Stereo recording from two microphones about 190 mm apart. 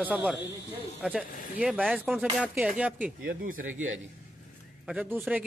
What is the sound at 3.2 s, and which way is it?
Speech, 45° right (ahead or behind).